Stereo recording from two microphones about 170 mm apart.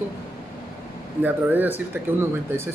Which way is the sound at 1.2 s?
10° right (ahead or behind).